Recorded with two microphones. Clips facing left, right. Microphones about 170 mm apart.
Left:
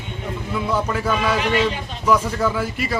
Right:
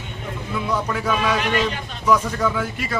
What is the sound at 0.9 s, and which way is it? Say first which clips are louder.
Speech: left 1 dB; 5° left (ahead or behind).